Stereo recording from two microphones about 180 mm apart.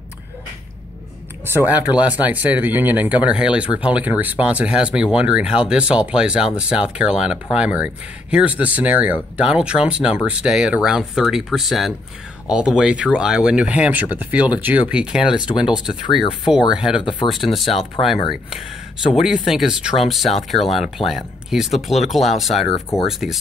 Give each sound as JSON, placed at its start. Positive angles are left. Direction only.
{"t": 1.6, "sound": "speech", "side_deg": -10}
{"t": 15.9, "sound": "speech", "side_deg": 25}
{"t": 16.7, "sound": "speech", "side_deg": -5}
{"t": 17.0, "sound": "speech", "side_deg": 25}
{"t": 17.3, "sound": "speech", "side_deg": 0}
{"t": 19.1, "sound": "speech", "side_deg": -5}